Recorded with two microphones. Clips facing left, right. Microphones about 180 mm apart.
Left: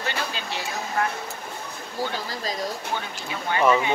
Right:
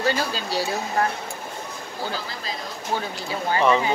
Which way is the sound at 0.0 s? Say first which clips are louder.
Right 6 dB; 35° right (ahead or behind).